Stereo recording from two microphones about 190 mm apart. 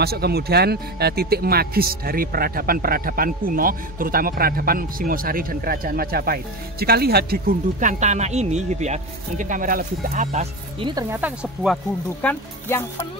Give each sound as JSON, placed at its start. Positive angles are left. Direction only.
{"t": 0.0, "sound": "speech", "side_deg": -55}
{"t": 10.3, "sound": "speech", "side_deg": -30}
{"t": 11.1, "sound": "speech", "side_deg": -10}
{"t": 11.7, "sound": "speech", "side_deg": 5}